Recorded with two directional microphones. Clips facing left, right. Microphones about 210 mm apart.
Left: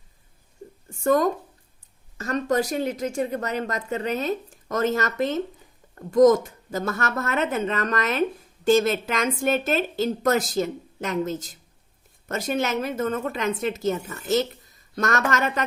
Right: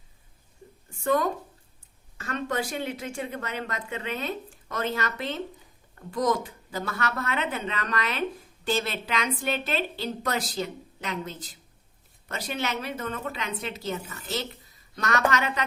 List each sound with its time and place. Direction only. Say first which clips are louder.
1.0 s a woman's voice: left 5 dB; 45° left (ahead or behind)